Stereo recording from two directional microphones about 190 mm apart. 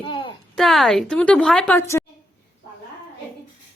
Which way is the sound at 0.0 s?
25° left (ahead or behind).